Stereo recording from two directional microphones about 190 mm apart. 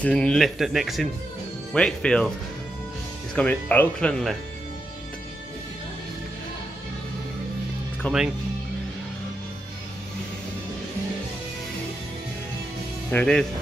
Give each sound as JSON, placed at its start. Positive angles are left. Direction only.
{"t": 0.0, "sound": "speech", "side_deg": 5}
{"t": 3.3, "sound": "speech", "side_deg": 10}
{"t": 8.0, "sound": "speech", "side_deg": 10}
{"t": 13.1, "sound": "speech", "side_deg": 5}